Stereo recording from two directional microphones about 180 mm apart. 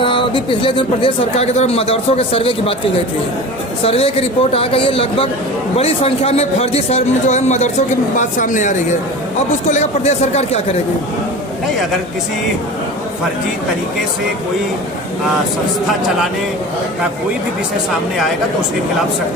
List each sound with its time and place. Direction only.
0.0 s a man's voice: 30° left (ahead or behind)
3.8 s a man's voice: 35° left (ahead or behind)
9.7 s a man's voice: 35° left (ahead or behind)